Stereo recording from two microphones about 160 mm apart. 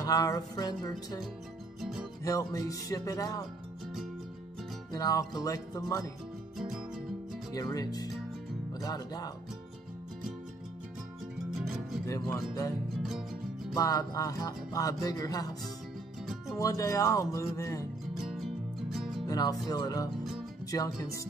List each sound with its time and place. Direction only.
0.0 s music: 20° left (ahead or behind)
1.8 s music: centre (ahead or behind)
2.2 s music: 20° left (ahead or behind)
4.9 s music: 20° left (ahead or behind)
7.5 s music: 25° left (ahead or behind)
11.6 s music: centre (ahead or behind)
13.7 s music: 20° left (ahead or behind)
16.5 s music: 20° left (ahead or behind)
18.1 s music: centre (ahead or behind)
19.2 s music: 25° left (ahead or behind)